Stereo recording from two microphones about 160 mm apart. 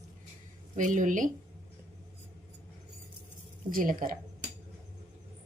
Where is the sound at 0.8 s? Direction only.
55° right (ahead or behind).